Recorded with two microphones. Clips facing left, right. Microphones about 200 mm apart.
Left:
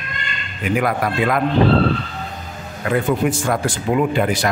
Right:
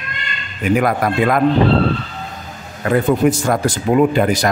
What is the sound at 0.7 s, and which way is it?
Speech, 45° right (ahead or behind).